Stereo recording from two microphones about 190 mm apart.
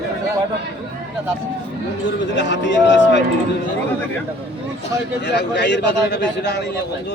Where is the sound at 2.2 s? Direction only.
70° left (ahead or behind).